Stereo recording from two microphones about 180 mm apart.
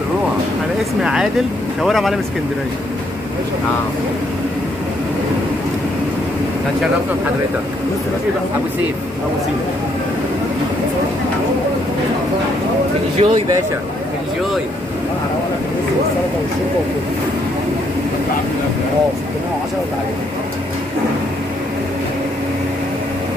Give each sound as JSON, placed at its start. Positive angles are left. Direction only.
{"t": 1.8, "sound": "speech", "side_deg": 0}
{"t": 13.2, "sound": "speech", "side_deg": -20}